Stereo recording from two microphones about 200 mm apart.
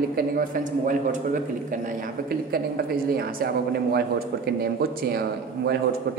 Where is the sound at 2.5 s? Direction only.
50° right (ahead or behind).